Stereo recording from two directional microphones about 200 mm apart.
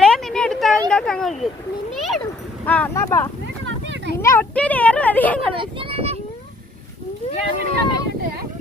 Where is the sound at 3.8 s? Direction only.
65° right (ahead or behind).